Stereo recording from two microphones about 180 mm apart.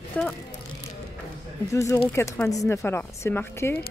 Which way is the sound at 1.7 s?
15° left (ahead or behind).